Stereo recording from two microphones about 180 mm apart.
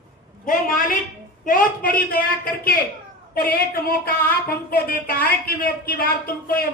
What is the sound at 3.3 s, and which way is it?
A woman's voice, 55° left (ahead or behind).